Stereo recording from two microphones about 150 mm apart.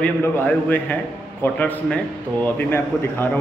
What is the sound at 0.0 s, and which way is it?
A man's voice, 10° left (ahead or behind).